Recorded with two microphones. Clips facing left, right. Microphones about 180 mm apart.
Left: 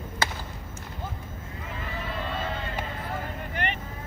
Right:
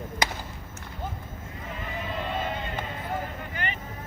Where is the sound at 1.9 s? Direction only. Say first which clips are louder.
Right 2 dB; 20° right (ahead or behind).